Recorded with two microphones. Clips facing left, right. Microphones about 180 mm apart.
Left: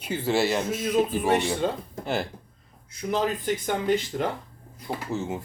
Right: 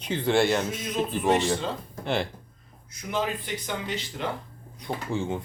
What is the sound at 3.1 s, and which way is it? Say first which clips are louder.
Speech: left 4 dB; 45° left (ahead or behind).